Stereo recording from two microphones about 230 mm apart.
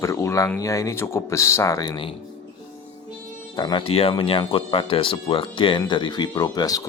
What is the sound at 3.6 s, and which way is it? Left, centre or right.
Speech, centre.